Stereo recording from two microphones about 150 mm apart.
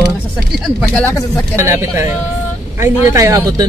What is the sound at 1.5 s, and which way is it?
Speech, 15° right (ahead or behind).